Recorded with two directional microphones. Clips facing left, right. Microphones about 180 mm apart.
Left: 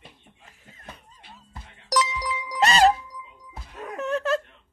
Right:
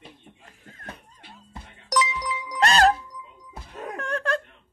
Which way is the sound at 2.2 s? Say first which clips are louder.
Even; 65° left (ahead or behind).